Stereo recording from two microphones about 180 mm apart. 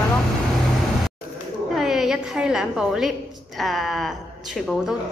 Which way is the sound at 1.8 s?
Centre (ahead or behind).